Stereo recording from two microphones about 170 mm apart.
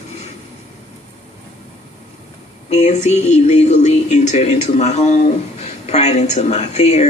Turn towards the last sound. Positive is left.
turn(degrees=40)  # may be behind; listen again after turning